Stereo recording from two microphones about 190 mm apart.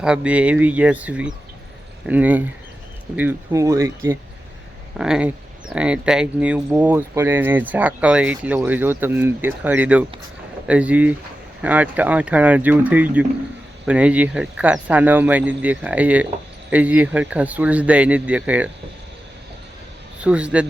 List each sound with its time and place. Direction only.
0.0 s speech: 5° right (ahead or behind)
4.9 s speech: 5° right (ahead or behind)
20.2 s speech: 5° right (ahead or behind)